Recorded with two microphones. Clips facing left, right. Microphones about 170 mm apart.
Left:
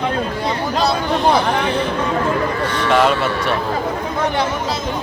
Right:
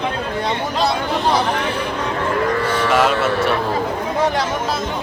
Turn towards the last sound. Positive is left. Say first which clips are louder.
# left 1 dB
turn(degrees=-5)  # may be behind; listen again after turning